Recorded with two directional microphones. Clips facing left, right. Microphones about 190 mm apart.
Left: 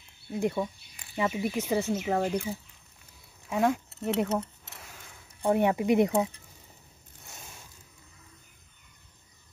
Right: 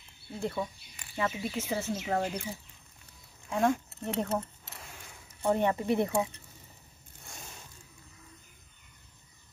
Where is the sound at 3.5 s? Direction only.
10° left (ahead or behind).